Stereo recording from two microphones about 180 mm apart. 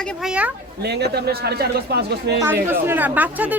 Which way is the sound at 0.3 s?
5° right (ahead or behind).